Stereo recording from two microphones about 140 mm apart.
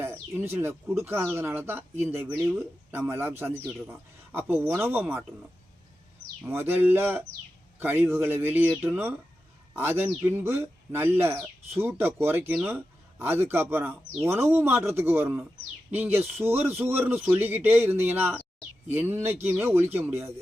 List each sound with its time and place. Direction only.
0.0 s speech: 15° right (ahead or behind)
6.4 s speech: 15° right (ahead or behind)